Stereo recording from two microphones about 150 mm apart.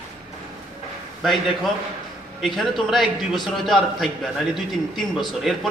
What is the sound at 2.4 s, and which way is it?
A man's voice, centre (ahead or behind).